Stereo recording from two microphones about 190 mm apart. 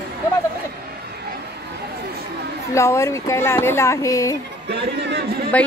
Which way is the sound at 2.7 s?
15° left (ahead or behind).